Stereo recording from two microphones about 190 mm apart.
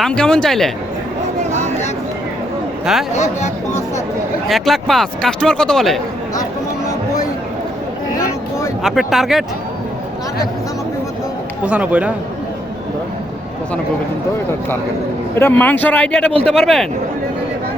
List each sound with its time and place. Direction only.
0.0 s speech: 5° left (ahead or behind)
3.2 s speech: 35° left (ahead or behind)
4.4 s speech: centre (ahead or behind)
8.8 s speech: centre (ahead or behind)
11.6 s speech: 5° right (ahead or behind)
15.4 s speech: 10° left (ahead or behind)